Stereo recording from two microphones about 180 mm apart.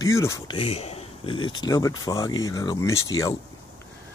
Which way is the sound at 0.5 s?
35° left (ahead or behind).